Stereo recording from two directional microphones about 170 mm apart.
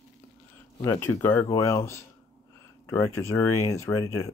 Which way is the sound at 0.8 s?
15° left (ahead or behind).